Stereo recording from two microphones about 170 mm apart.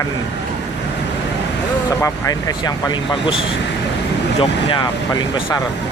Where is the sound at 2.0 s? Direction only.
20° left (ahead or behind).